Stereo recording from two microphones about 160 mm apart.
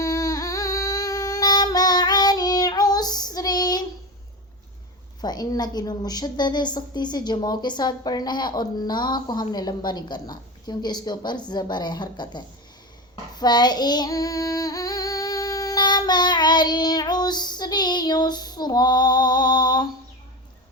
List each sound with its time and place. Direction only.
0.0 s singing: 20° left (ahead or behind)
5.2 s a woman's voice: 25° left (ahead or behind)
13.3 s female singing: 25° left (ahead or behind)